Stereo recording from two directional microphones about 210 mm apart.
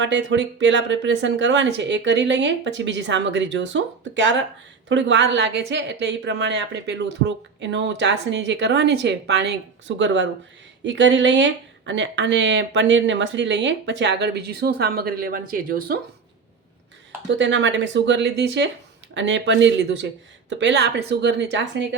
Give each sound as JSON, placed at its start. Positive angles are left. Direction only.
{"t": 0.0, "sound": "a woman's voice", "side_deg": -60}
{"t": 17.3, "sound": "a woman's voice", "side_deg": -60}